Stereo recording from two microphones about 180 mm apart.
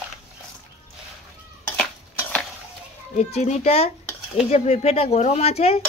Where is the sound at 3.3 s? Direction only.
40° left (ahead or behind).